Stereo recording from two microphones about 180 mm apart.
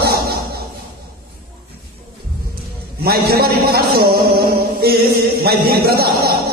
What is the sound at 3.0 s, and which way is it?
A man's voice, 60° right (ahead or behind).